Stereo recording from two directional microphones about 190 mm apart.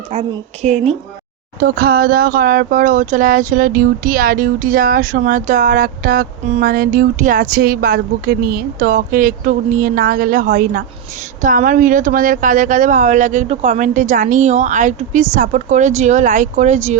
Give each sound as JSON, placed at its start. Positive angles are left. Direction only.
{"t": 0.1, "sound": "a woman's voice", "side_deg": -40}
{"t": 1.5, "sound": "a woman's voice", "side_deg": -50}